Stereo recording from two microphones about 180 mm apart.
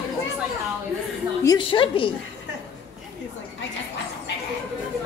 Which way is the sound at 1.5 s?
25° left (ahead or behind).